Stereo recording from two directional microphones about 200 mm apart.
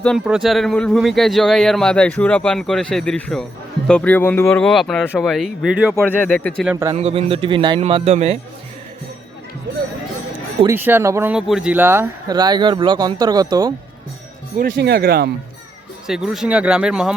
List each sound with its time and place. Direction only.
0.0 s speech: centre (ahead or behind)
6.1 s speech: 10° left (ahead or behind)
6.7 s speech: 15° right (ahead or behind)
6.9 s a man's voice: 30° right (ahead or behind)
10.7 s speech: 10° right (ahead or behind)
14.6 s speech: 50° right (ahead or behind)
16.0 s speech: centre (ahead or behind)